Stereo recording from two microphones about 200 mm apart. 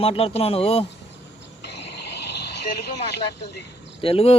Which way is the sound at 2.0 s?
55° left (ahead or behind).